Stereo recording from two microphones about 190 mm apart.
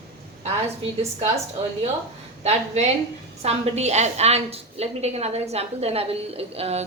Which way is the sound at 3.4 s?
35° right (ahead or behind).